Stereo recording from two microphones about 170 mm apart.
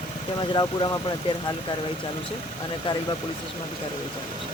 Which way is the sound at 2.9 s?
30° left (ahead or behind).